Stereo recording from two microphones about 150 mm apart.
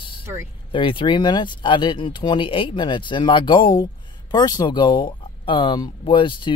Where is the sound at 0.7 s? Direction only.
35° left (ahead or behind).